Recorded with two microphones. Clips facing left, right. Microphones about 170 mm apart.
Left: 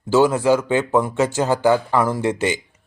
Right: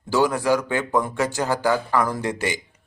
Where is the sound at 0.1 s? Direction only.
15° left (ahead or behind).